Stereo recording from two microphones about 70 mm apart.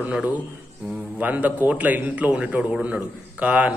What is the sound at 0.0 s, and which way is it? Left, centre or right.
A man's voice, right.